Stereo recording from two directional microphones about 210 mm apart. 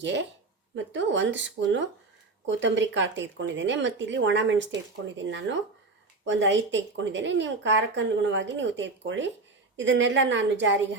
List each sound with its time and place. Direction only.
0.8 s speech: 60° right (ahead or behind)